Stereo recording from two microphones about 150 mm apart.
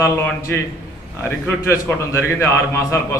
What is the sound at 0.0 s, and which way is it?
A man's voice, 15° left (ahead or behind).